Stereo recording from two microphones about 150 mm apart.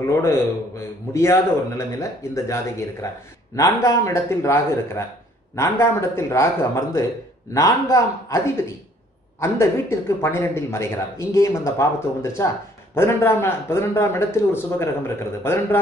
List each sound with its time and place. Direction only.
0.1 s speech: 20° left (ahead or behind)
9.4 s a man's voice: 20° left (ahead or behind)